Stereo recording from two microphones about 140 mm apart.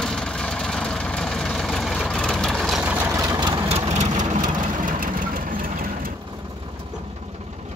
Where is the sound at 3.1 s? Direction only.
25° right (ahead or behind).